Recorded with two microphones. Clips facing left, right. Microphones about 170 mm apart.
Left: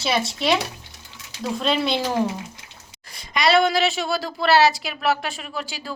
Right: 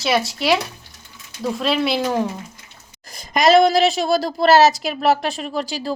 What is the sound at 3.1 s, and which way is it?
A woman's voice, 45° right (ahead or behind).